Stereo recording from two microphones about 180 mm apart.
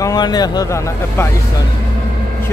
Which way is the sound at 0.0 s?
20° left (ahead or behind).